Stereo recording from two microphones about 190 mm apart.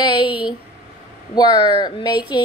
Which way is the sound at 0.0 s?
25° left (ahead or behind).